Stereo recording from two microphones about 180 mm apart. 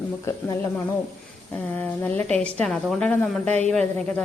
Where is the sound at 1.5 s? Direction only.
10° left (ahead or behind).